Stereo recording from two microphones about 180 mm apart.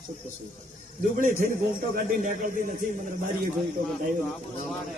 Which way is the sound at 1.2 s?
50° right (ahead or behind).